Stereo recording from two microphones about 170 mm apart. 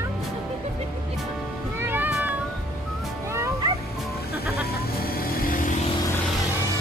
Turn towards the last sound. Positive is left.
turn(degrees=55)  # may be behind; listen again after turning